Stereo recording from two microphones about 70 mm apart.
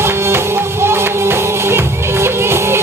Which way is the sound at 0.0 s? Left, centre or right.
Right.